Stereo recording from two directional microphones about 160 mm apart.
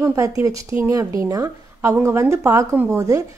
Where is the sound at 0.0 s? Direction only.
20° right (ahead or behind).